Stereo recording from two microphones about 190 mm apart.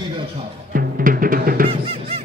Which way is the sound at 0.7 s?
45° right (ahead or behind).